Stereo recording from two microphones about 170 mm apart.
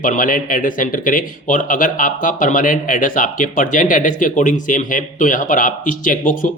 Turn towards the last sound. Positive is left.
turn(degrees=50)  # may be behind; listen again after turning